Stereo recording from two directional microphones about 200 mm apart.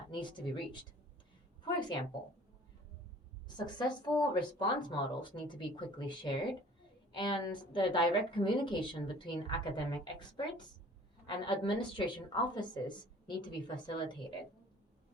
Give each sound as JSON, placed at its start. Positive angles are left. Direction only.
{"t": 0.1, "sound": "a woman's voice", "side_deg": 25}
{"t": 3.8, "sound": "a woman's voice", "side_deg": 20}